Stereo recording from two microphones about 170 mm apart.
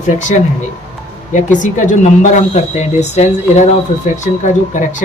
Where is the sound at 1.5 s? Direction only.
50° left (ahead or behind).